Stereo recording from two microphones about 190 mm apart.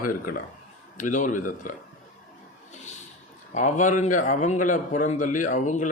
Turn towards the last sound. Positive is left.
turn(degrees=40)  # may be behind; listen again after turning